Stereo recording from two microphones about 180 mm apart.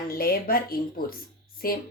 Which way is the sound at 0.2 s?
55° left (ahead or behind).